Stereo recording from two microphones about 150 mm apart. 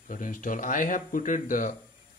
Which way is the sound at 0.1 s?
60° left (ahead or behind).